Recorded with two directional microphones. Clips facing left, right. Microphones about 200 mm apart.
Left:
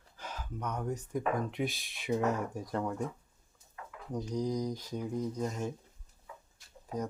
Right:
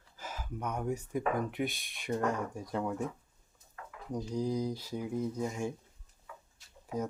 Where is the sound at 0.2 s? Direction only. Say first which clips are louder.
Right 1 dB; 5° right (ahead or behind).